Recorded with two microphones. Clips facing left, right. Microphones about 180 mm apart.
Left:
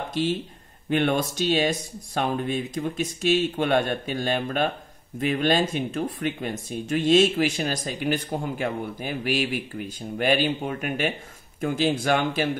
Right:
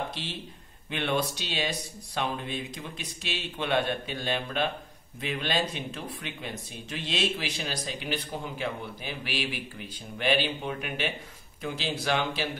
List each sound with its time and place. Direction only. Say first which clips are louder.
0.1 s speech: left 13 dB; 45° left (ahead or behind)